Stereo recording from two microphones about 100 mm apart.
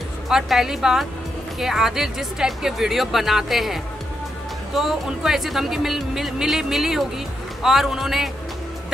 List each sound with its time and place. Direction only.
0.3 s speech: 5° right (ahead or behind)